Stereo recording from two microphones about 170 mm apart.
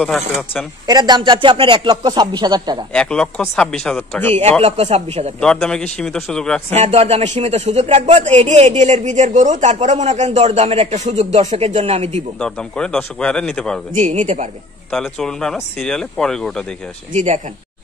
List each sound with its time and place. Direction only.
0.8 s speech: 25° right (ahead or behind)
2.9 s speech: 5° left (ahead or behind)
4.4 s speech: 35° right (ahead or behind)
5.4 s speech: 5° left (ahead or behind)
6.7 s speech: 40° right (ahead or behind)
12.4 s speech: 5° left (ahead or behind)
13.9 s speech: 50° right (ahead or behind)
14.9 s speech: 5° left (ahead or behind)
17.1 s speech: 45° right (ahead or behind)